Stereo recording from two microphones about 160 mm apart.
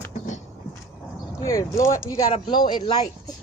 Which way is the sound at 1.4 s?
20° left (ahead or behind).